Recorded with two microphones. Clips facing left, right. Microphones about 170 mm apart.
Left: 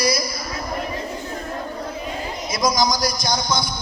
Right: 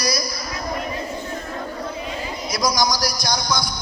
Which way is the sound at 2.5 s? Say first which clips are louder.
Left 1 dB; 25° left (ahead or behind).